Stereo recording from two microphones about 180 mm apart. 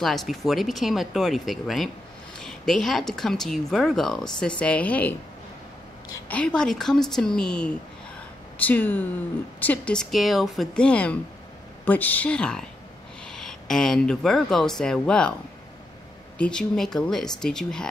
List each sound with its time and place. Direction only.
0.0 s speech: centre (ahead or behind)
6.2 s a woman's voice: 5° left (ahead or behind)
16.3 s speech: 5° left (ahead or behind)